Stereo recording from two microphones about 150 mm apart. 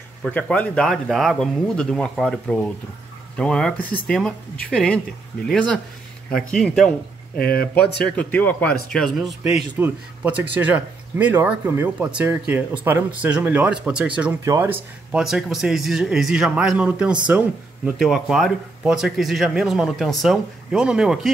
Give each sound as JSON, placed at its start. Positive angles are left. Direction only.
{"t": 0.3, "sound": "speech", "side_deg": 10}
{"t": 6.3, "sound": "speech", "side_deg": 5}
{"t": 7.3, "sound": "speech", "side_deg": 90}
{"t": 8.2, "sound": "speech", "side_deg": 10}
{"t": 9.4, "sound": "speech", "side_deg": -10}